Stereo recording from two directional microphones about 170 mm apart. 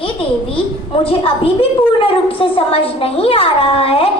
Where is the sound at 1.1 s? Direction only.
35° left (ahead or behind).